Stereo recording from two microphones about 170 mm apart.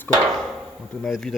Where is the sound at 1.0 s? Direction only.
Centre (ahead or behind).